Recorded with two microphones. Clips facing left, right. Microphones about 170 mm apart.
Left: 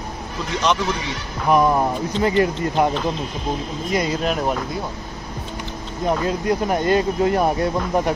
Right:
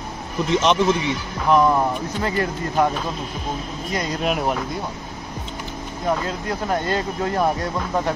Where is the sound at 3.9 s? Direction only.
10° left (ahead or behind).